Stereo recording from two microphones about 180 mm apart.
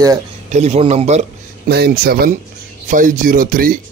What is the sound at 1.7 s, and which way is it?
Speech, 60° right (ahead or behind).